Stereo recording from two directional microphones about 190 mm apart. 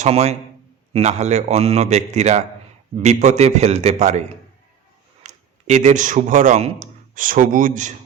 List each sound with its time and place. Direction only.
0.0 s a man's voice: 35° right (ahead or behind)